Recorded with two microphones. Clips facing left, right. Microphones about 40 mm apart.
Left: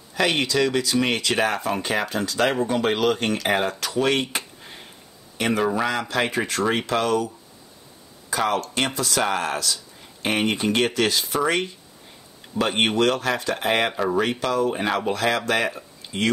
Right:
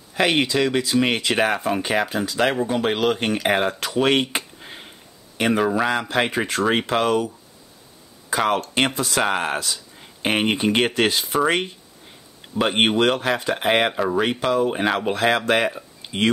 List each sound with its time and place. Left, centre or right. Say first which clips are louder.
0.1 s speech: right 2 dB; centre
3.8 s a sound: right 3 dB; right
5.6 s speech: right 1 dB; centre
5.9 s speech: right 2 dB; right
8.4 s speech: right 3 dB; right
13.9 s speech: right 1 dB; centre
14.4 s speech: right 2 dB; centre
16.0 s a sound: right 3 dB; right